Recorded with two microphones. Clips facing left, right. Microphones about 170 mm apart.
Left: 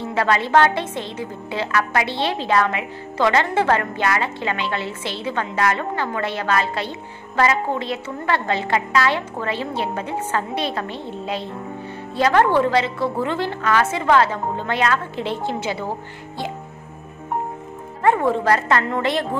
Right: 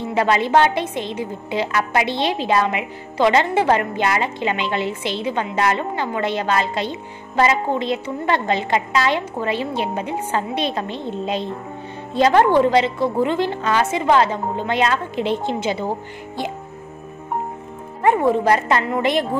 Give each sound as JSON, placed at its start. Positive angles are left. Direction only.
{"t": 0.0, "sound": "a woman's voice", "side_deg": -15}
{"t": 18.0, "sound": "a woman's voice", "side_deg": -15}